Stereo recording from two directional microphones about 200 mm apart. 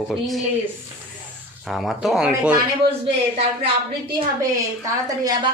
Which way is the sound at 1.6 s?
Centre (ahead or behind).